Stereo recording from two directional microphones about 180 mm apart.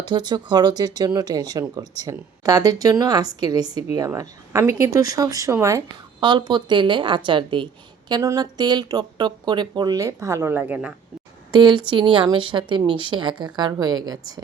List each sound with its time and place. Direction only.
0.0 s speech: 25° right (ahead or behind); by 10.9 s 5° right (ahead or behind)
11.5 s speech: 25° right (ahead or behind)